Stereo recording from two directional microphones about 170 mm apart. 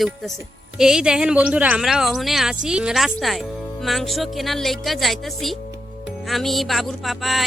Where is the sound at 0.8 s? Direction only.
5° right (ahead or behind).